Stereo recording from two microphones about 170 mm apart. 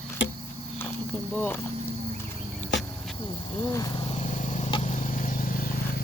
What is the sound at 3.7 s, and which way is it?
Vehicle, 20° left (ahead or behind).